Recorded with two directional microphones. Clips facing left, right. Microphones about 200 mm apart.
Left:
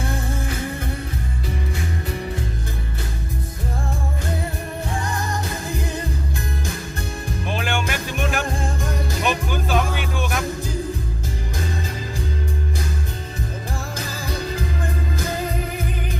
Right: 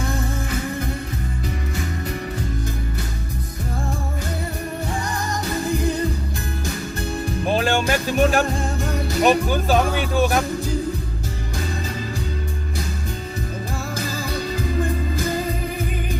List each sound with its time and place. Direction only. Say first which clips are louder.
7.5 s music: right 6 dB; 35° right (ahead or behind)